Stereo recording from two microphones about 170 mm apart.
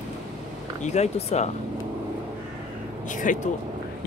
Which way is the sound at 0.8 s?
40° left (ahead or behind).